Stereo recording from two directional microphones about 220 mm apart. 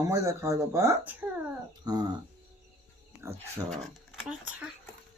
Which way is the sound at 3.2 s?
10° right (ahead or behind).